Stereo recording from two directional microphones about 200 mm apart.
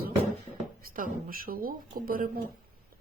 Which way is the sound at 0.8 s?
45° right (ahead or behind).